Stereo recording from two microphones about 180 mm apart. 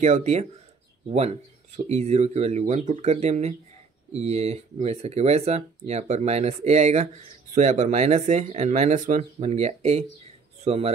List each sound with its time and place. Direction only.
0.0 s speech: 40° right (ahead or behind)
1.8 s speech: 35° right (ahead or behind)